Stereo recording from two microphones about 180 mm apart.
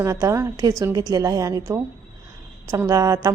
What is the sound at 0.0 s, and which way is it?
A woman's voice, 15° right (ahead or behind).